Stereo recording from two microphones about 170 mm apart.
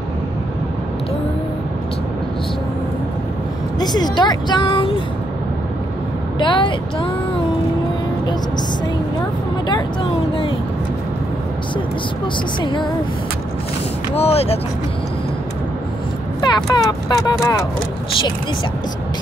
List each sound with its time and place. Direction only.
3.8 s speech: 25° left (ahead or behind)
6.4 s speech: 30° left (ahead or behind)
14.1 s speech: 35° left (ahead or behind)
16.3 s speech: 25° left (ahead or behind)